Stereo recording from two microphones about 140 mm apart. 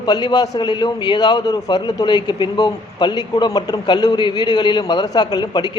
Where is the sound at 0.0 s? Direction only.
30° left (ahead or behind).